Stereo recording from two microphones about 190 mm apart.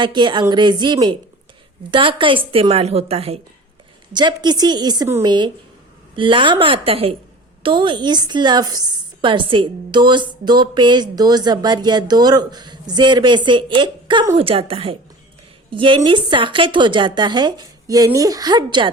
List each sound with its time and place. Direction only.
0.0 s a woman's voice: 25° right (ahead or behind)